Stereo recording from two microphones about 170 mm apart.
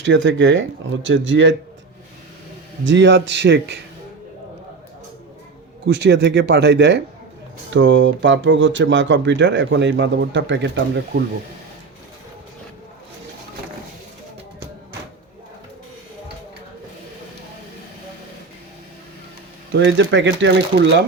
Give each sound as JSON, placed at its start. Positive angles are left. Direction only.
{"t": 0.0, "sound": "speech", "side_deg": -90}
{"t": 2.8, "sound": "speech", "side_deg": -90}
{"t": 5.9, "sound": "speech", "side_deg": -90}
{"t": 19.7, "sound": "speech", "side_deg": -90}